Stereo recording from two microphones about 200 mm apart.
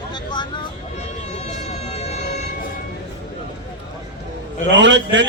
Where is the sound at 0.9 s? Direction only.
35° left (ahead or behind).